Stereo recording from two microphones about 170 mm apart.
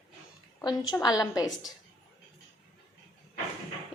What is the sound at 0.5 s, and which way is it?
A woman's voice, 20° left (ahead or behind).